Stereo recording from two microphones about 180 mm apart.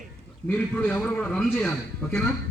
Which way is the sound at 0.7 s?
10° left (ahead or behind).